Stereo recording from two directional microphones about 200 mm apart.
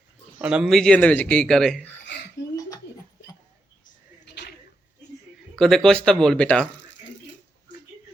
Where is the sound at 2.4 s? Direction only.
60° left (ahead or behind).